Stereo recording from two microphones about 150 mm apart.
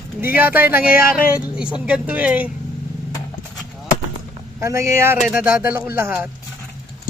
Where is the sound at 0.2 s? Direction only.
15° right (ahead or behind).